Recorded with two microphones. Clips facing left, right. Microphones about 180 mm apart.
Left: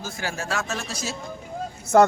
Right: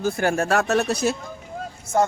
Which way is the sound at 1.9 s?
40° left (ahead or behind).